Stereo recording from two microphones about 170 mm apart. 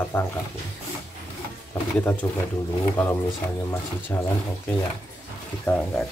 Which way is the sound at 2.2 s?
15° left (ahead or behind).